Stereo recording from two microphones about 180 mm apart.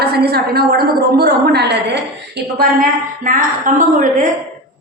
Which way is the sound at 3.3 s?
50° right (ahead or behind).